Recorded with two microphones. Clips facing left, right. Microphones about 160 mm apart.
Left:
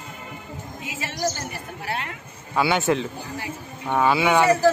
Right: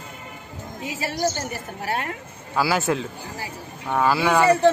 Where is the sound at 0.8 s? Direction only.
40° right (ahead or behind).